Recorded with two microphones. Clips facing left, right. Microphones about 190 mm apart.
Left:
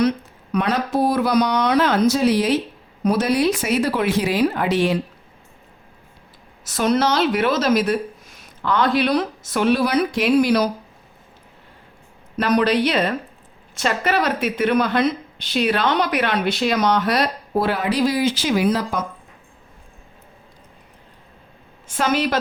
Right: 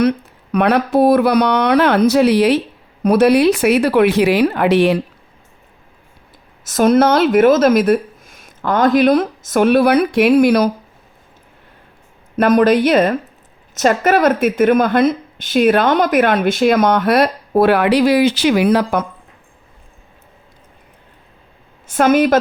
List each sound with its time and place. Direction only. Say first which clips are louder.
0.5 s speech: right 7 dB; 60° right (ahead or behind)
6.7 s a woman's voice: right 7 dB; 50° right (ahead or behind)
12.4 s a woman's voice: right 6 dB; 50° right (ahead or behind)
21.9 s a woman's voice: right 8 dB; 50° right (ahead or behind)